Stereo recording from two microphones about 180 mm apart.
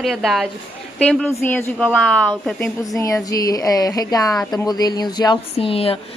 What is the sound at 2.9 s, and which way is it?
Speech, 20° left (ahead or behind).